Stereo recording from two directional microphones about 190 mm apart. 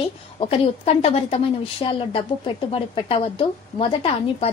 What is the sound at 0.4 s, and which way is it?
A woman's voice, 30° left (ahead or behind).